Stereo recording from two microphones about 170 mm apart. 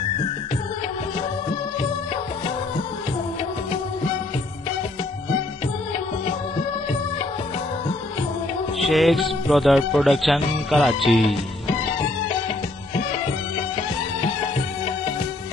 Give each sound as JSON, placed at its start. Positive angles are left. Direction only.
{"t": 8.7, "sound": "speech", "side_deg": 0}